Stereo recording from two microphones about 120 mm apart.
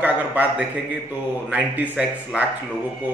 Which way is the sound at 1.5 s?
15° right (ahead or behind).